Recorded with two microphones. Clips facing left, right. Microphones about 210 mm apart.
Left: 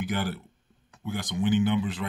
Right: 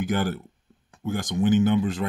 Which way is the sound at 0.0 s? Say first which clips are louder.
Right 5 dB; 45° right (ahead or behind).